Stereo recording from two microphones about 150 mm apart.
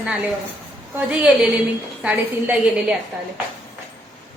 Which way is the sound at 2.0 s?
5° right (ahead or behind).